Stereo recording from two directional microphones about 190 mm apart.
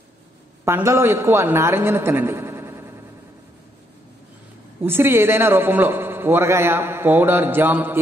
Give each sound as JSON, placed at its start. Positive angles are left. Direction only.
{"t": 0.7, "sound": "a man's voice", "side_deg": -15}
{"t": 4.8, "sound": "a man's voice", "side_deg": -10}